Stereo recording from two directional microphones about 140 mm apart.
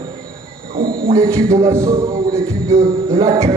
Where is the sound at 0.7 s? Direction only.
90° right.